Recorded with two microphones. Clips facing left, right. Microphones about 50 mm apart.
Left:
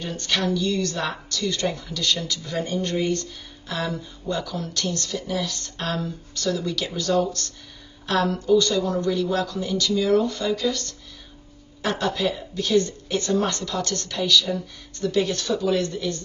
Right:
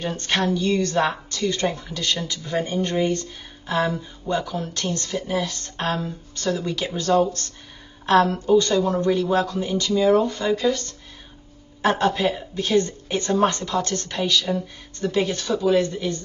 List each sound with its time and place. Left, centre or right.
0.0 s a woman's voice: right